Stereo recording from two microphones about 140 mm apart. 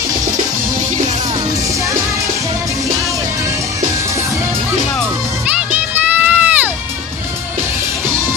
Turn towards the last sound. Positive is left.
turn(degrees=-10)  # may be behind; listen again after turning